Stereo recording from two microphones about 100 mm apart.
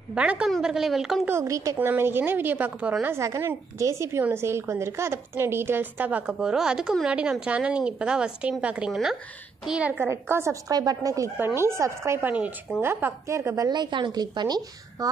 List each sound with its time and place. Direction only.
0.1 s a woman's voice: 10° right (ahead or behind)
1.4 s a woman's voice: 35° right (ahead or behind)
1.8 s a woman's voice: 20° right (ahead or behind)
10.0 s a woman's voice: 25° right (ahead or behind)
10.7 s a woman's voice: 40° right (ahead or behind)
11.3 s a woman's voice: 25° right (ahead or behind)
12.2 s a woman's voice: 15° right (ahead or behind)
13.7 s a woman's voice: 50° right (ahead or behind)